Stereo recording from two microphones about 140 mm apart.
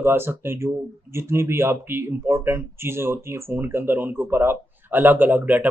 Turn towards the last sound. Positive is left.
turn(degrees=-10)  # may be behind; listen again after turning